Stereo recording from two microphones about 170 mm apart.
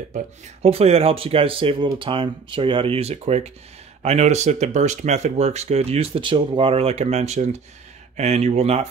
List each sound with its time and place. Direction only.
0.6 s speech: 35° right (ahead or behind)